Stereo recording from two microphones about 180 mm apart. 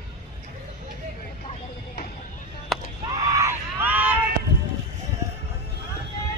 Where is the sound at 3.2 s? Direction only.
15° right (ahead or behind).